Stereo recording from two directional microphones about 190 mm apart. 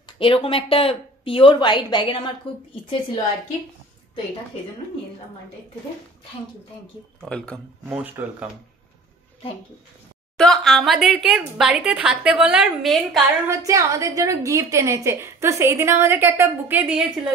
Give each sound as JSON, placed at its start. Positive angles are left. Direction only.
{"t": 0.2, "sound": "speech", "side_deg": 30}
{"t": 7.2, "sound": "a woman's voice", "side_deg": 5}
{"t": 7.9, "sound": "a woman's voice", "side_deg": -5}
{"t": 10.3, "sound": "a woman's voice", "side_deg": 5}
{"t": 13.5, "sound": "a woman's voice", "side_deg": -15}